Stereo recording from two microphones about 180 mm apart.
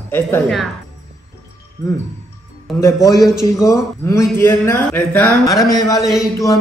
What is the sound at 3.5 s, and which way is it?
Speech, 20° left (ahead or behind).